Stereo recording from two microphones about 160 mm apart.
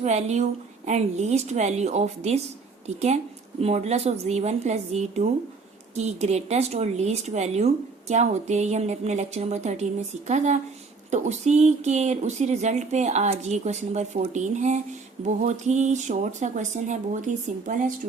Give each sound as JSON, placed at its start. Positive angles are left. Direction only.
{"t": 0.0, "sound": "speech", "side_deg": -45}